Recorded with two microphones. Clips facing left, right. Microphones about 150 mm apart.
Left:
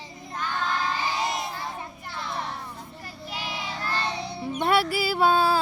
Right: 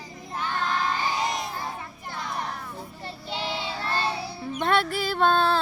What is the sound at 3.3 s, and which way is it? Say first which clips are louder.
Child singing: right 3 dB; 30° right (ahead or behind).